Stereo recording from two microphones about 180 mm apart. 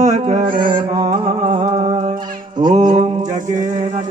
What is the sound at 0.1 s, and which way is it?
Music, 35° right (ahead or behind).